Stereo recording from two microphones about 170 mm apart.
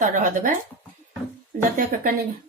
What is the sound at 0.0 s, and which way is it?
Speech, 50° right (ahead or behind).